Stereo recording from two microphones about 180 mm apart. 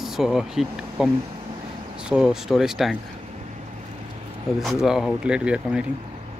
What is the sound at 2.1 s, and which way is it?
Speech, 5° right (ahead or behind).